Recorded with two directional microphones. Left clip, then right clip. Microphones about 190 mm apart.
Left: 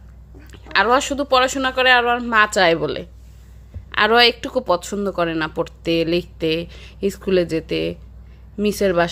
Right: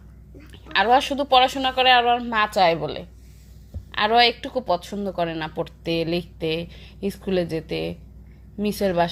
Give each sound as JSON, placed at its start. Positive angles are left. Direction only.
{"t": 0.5, "sound": "speech", "side_deg": 20}